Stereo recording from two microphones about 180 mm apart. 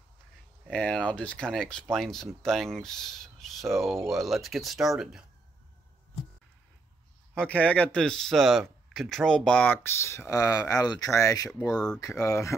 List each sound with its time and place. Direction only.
0.7 s speech: 5° left (ahead or behind)
7.3 s speech: 10° left (ahead or behind)